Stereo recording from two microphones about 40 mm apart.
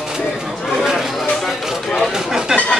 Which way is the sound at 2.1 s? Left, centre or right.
Centre.